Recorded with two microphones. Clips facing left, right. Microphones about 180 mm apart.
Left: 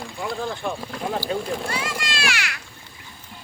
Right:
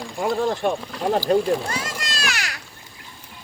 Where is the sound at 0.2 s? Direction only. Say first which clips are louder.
Right 7 dB; 40° right (ahead or behind).